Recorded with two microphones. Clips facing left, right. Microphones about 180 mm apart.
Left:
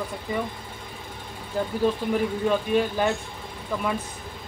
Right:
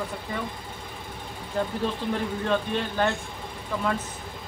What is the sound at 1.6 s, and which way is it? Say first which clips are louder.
Speech: left 4 dB; 10° left (ahead or behind).